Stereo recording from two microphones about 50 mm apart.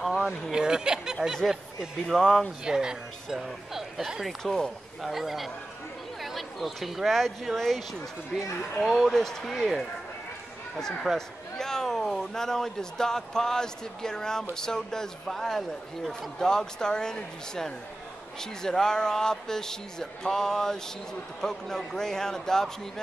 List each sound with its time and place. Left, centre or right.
0.0 s a sound: centre
0.5 s speech: centre
2.0 s speech: centre
2.6 s speech: centre
4.4 s a man's voice: centre
5.0 s a man's voice: centre
9.6 s speech: centre
10.8 s a man's voice: centre